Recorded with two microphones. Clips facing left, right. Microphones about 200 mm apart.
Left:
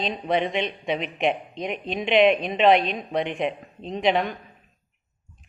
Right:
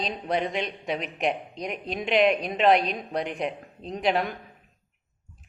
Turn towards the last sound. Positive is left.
turn(degrees=-5)  # may be behind; listen again after turning